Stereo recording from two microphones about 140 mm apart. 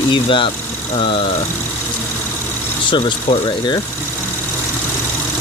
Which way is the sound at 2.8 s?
35° left (ahead or behind).